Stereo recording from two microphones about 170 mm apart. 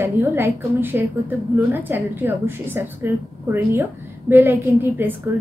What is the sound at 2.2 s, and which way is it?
Speech, 15° right (ahead or behind).